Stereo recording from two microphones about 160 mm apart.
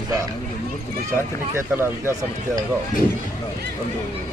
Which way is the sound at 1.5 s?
15° right (ahead or behind).